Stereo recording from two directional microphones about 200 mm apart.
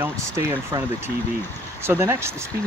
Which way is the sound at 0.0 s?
15° right (ahead or behind).